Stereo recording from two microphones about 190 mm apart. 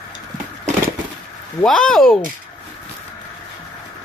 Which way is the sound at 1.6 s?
5° left (ahead or behind).